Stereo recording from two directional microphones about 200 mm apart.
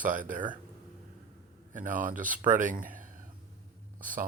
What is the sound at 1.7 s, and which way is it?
Speech, 40° right (ahead or behind).